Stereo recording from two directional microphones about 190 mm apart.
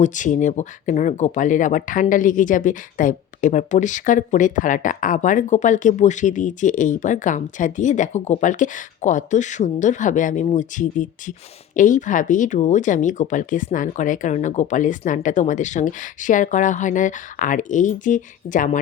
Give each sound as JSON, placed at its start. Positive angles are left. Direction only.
{"t": 0.0, "sound": "speech", "side_deg": 40}